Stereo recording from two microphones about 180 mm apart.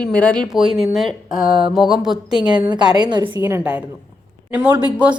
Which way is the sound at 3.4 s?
10° right (ahead or behind).